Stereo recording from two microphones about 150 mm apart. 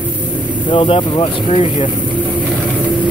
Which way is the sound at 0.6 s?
35° left (ahead or behind).